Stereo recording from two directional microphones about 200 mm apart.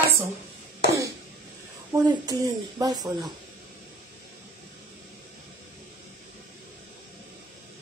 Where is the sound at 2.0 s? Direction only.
20° right (ahead or behind).